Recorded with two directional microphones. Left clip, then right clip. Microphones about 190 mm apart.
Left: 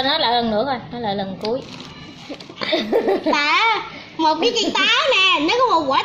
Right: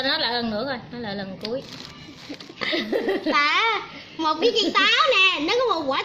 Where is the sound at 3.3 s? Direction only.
30° right (ahead or behind).